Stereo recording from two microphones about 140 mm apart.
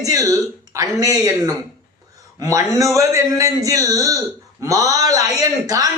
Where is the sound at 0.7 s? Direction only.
25° right (ahead or behind).